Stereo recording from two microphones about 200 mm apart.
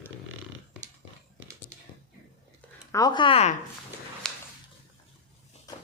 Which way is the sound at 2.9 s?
20° left (ahead or behind).